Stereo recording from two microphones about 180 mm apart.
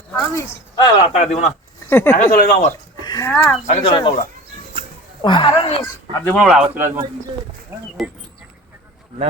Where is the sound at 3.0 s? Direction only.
25° left (ahead or behind).